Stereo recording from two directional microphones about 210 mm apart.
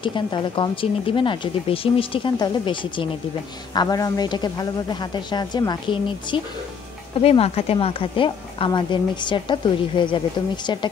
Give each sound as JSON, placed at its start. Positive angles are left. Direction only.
{"t": 0.0, "sound": "a woman's voice", "side_deg": 20}